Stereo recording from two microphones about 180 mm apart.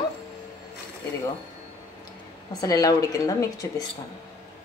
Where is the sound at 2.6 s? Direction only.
20° left (ahead or behind).